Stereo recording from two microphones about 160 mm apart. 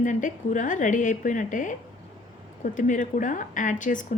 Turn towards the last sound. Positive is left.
turn(degrees=55)  # may be behind; listen again after turning